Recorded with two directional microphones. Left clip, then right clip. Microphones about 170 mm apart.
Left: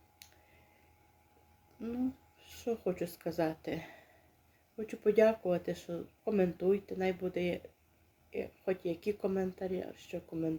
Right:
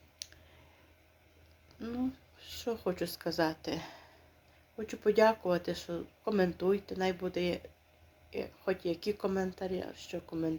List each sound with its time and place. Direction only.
2.4 s speech: 15° left (ahead or behind)